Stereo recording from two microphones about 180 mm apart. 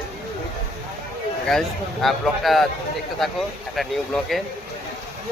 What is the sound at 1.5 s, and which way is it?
Speech, centre (ahead or behind).